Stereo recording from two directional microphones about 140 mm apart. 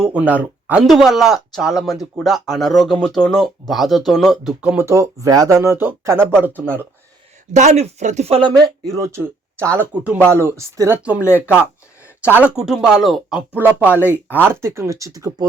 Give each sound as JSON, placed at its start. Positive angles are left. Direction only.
{"t": 0.0, "sound": "speech", "side_deg": -10}
{"t": 0.9, "sound": "speech", "side_deg": 0}
{"t": 4.8, "sound": "speech", "side_deg": -20}
{"t": 7.5, "sound": "speech", "side_deg": -55}
{"t": 13.5, "sound": "speech", "side_deg": -15}